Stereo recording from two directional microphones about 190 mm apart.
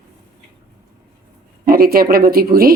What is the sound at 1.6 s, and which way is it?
Speech, 50° right (ahead or behind).